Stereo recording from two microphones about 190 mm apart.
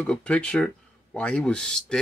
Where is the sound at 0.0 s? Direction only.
5° left (ahead or behind).